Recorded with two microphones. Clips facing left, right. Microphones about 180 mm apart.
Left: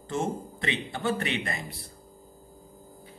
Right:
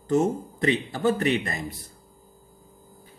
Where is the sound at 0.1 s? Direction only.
40° right (ahead or behind).